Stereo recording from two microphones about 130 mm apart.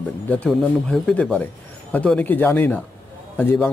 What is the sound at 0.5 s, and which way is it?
A man's voice, centre (ahead or behind).